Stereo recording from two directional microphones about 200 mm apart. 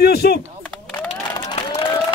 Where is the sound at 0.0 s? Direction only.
55° left (ahead or behind).